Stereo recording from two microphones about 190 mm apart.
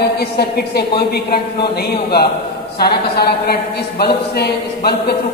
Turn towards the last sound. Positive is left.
turn(degrees=55)  # may be behind; listen again after turning